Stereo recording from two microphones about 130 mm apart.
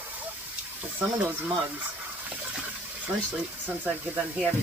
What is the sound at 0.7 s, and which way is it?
Speech, 10° right (ahead or behind).